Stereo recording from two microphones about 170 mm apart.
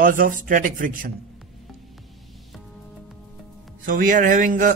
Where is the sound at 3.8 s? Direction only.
50° right (ahead or behind).